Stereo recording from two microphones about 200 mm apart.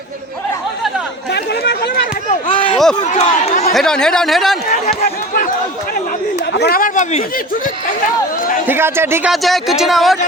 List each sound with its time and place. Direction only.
1.3 s a sound: 55° left (ahead or behind)
2.5 s a sound: 25° left (ahead or behind)
3.0 s a man's voice: 35° left (ahead or behind)
3.7 s speech: centre (ahead or behind)
6.5 s speech: 55° left (ahead or behind)
8.6 s a man's voice: 10° right (ahead or behind)
9.3 s speech: centre (ahead or behind)